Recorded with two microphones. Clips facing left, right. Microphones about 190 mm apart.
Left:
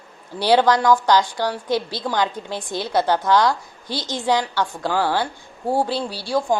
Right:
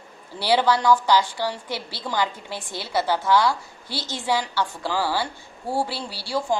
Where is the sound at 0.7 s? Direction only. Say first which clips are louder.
Left 3 dB; 15° left (ahead or behind).